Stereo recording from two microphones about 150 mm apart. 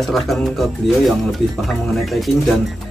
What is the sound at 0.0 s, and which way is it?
Speech, centre (ahead or behind).